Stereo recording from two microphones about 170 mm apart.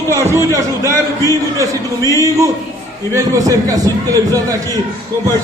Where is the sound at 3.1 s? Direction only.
20° right (ahead or behind).